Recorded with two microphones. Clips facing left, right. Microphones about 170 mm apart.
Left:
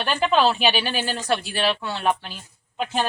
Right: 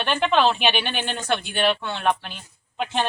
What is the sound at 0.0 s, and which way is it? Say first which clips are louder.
Speech: even; 5° left (ahead or behind).